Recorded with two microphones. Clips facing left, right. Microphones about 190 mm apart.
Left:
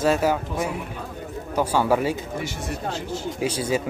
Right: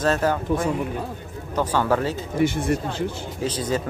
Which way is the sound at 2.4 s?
55° right (ahead or behind).